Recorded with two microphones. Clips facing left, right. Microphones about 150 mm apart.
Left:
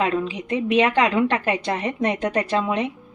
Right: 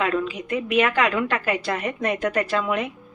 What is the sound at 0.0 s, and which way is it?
A woman's voice, 25° left (ahead or behind).